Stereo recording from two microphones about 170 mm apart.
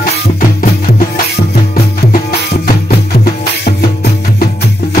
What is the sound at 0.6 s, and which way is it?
Music, 55° left (ahead or behind).